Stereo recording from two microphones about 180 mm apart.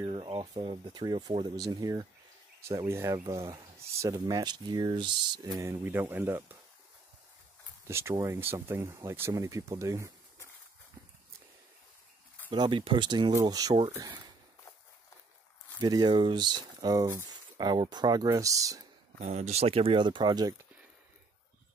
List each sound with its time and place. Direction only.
0.0 s speech: 30° right (ahead or behind); by 6.6 s 10° right (ahead or behind)
7.8 s speech: 15° right (ahead or behind)
12.4 s speech: 25° right (ahead or behind)
15.8 s speech: 25° right (ahead or behind)
19.1 s speech: 40° right (ahead or behind); by 20.5 s 20° right (ahead or behind)